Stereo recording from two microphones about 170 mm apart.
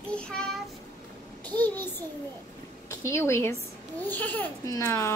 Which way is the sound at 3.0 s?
15° left (ahead or behind).